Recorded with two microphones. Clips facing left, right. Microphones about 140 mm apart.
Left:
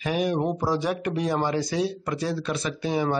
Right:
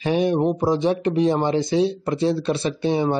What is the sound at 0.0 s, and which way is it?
Speech, 30° right (ahead or behind).